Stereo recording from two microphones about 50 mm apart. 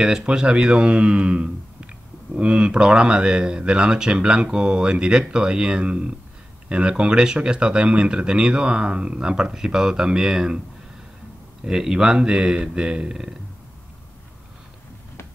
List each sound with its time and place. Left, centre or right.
0.2 s speech: centre
11.6 s speech: centre